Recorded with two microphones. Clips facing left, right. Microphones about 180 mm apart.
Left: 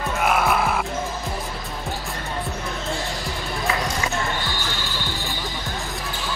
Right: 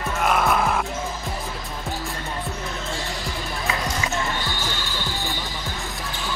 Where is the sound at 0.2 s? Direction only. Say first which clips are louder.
Even; 5° left (ahead or behind).